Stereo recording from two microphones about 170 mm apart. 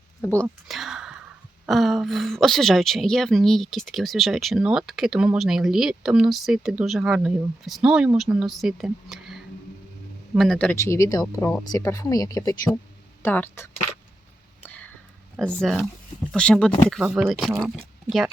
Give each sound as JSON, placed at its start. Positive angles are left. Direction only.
{"t": 0.7, "sound": "whispering", "side_deg": 0}
{"t": 1.6, "sound": "speech", "side_deg": 0}
{"t": 14.6, "sound": "a sound", "side_deg": 10}
{"t": 15.4, "sound": "speech", "side_deg": 5}
{"t": 17.0, "sound": "speech", "side_deg": -5}